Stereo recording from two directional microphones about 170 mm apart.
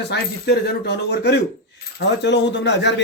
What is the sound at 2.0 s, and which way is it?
Speech, 90° left.